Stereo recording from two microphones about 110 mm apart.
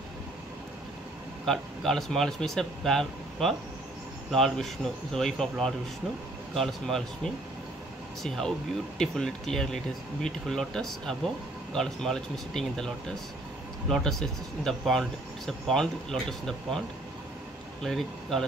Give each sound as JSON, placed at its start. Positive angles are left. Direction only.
{"t": 1.4, "sound": "speech", "side_deg": 0}
{"t": 17.8, "sound": "speech", "side_deg": 0}